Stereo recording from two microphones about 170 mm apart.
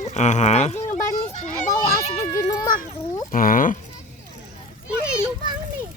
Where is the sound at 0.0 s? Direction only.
40° left (ahead or behind).